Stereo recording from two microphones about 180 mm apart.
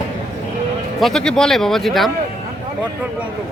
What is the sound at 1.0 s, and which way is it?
Speech, 5° left (ahead or behind).